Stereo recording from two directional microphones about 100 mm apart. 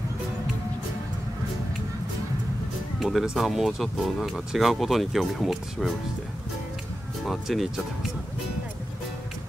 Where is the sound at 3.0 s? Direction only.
Centre (ahead or behind).